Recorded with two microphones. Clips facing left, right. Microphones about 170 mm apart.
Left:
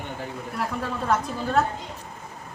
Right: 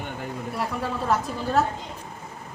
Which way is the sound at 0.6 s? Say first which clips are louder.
Even; centre (ahead or behind).